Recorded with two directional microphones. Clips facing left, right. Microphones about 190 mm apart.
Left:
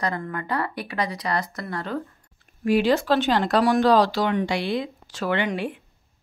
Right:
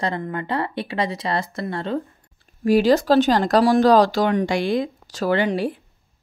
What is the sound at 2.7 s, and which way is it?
Speech, 40° right (ahead or behind).